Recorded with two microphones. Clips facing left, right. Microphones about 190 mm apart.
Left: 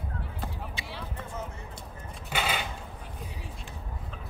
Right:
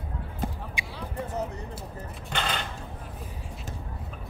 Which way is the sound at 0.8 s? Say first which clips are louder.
Right 2 dB; 15° right (ahead or behind).